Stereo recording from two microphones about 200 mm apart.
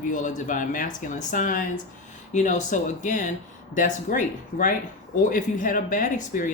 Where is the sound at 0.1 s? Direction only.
40° left (ahead or behind).